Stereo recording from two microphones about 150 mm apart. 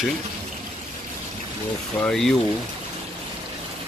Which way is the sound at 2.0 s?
5° left (ahead or behind).